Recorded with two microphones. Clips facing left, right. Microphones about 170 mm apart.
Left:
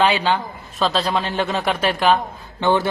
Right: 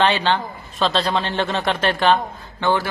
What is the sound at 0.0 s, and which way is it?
A man's voice, 10° left (ahead or behind).